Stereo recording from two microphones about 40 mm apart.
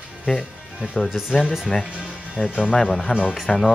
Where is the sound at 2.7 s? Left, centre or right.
Centre.